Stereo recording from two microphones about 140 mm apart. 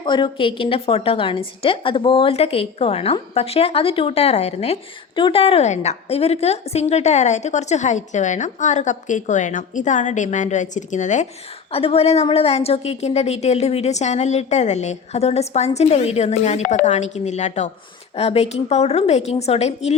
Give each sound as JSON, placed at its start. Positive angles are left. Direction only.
{"t": 0.0, "sound": "a woman's voice", "side_deg": 35}
{"t": 5.1, "sound": "a woman's voice", "side_deg": 40}
{"t": 11.7, "sound": "a woman's voice", "side_deg": 45}